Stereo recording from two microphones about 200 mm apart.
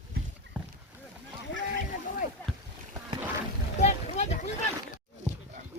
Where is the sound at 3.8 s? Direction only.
35° left (ahead or behind).